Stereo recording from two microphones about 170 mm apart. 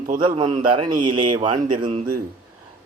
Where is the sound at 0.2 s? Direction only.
30° right (ahead or behind).